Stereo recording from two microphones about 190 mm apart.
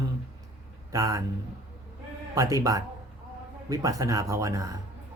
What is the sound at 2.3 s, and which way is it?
Speech, 20° right (ahead or behind).